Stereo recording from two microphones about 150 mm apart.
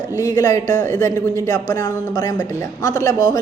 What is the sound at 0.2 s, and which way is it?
Speech, 25° left (ahead or behind).